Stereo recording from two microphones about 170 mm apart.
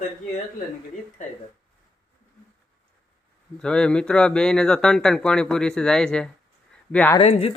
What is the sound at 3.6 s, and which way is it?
Speech, 5° left (ahead or behind).